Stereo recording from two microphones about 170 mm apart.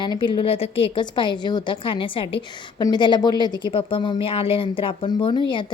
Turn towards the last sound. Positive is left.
turn(degrees=30)  # may be behind; listen again after turning